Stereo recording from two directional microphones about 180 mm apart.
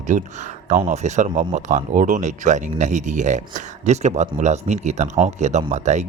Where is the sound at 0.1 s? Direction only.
45° right (ahead or behind).